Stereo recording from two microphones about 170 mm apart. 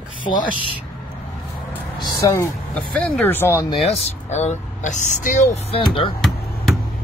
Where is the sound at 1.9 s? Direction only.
25° left (ahead or behind).